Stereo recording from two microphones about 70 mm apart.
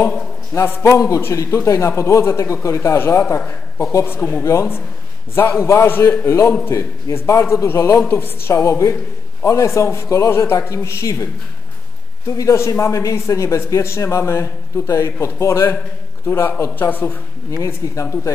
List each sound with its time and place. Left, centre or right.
0.5 s a man's voice: left
12.3 s a man's voice: left
17.8 s speech: left